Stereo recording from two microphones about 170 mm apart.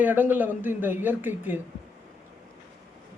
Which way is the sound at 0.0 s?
10° right (ahead or behind).